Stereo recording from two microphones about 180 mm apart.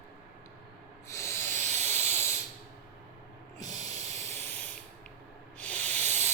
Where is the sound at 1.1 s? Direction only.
15° left (ahead or behind).